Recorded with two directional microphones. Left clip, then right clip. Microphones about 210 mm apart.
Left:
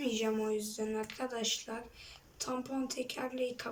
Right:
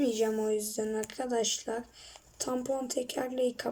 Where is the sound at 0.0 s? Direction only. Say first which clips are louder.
Right 5 dB; 25° right (ahead or behind).